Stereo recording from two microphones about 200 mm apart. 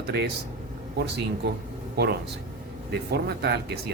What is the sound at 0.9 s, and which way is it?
Speech, 55° right (ahead or behind).